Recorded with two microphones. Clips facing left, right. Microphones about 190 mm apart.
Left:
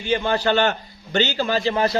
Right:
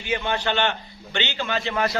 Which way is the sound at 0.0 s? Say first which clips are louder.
Left 5 dB; 35° left (ahead or behind).